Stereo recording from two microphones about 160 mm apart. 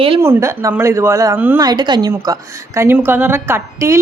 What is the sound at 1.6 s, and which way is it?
A woman's voice, 25° right (ahead or behind).